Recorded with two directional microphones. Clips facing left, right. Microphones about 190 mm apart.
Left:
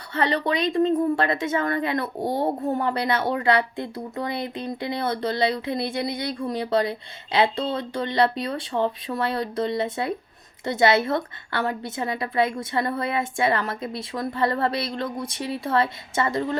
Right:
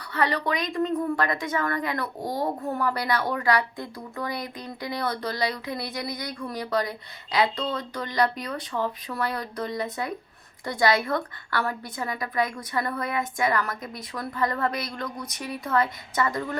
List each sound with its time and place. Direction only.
0.1 s speech: 25° left (ahead or behind)